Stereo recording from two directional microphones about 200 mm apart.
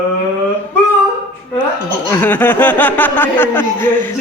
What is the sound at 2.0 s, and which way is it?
Speech, 10° left (ahead or behind).